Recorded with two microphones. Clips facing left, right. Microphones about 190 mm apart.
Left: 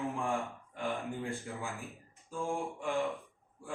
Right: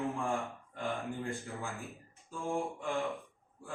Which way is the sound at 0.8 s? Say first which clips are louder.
Left 1 dB; 15° left (ahead or behind).